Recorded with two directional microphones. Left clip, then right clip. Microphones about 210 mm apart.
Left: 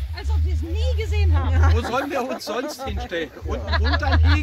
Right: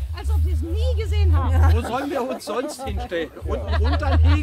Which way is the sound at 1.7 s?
20° left (ahead or behind).